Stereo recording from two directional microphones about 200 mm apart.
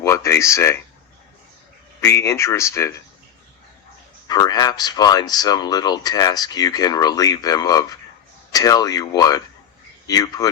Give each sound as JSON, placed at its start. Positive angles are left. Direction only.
{"t": 0.0, "sound": "speech", "side_deg": 15}
{"t": 2.0, "sound": "speech", "side_deg": 10}
{"t": 4.3, "sound": "speech", "side_deg": 20}